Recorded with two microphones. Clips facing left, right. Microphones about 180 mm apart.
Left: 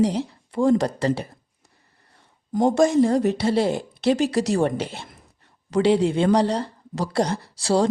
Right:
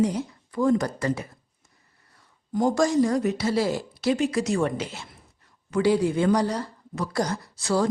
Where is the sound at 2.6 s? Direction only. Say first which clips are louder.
Left 4 dB; 25° left (ahead or behind).